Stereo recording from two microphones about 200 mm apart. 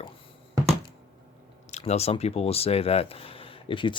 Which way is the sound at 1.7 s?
35° left (ahead or behind).